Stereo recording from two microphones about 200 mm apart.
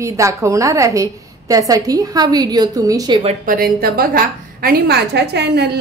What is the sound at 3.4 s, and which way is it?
A woman's voice, 45° right (ahead or behind).